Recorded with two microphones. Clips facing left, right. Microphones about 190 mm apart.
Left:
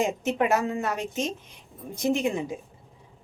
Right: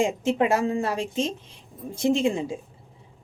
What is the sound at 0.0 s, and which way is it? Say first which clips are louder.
Speech: right 3 dB; 25° right (ahead or behind).